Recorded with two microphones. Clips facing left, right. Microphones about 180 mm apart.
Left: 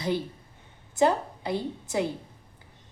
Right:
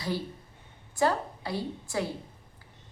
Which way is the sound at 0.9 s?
20° left (ahead or behind).